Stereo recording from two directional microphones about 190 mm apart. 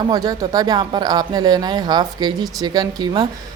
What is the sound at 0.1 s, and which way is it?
Speech, 20° right (ahead or behind).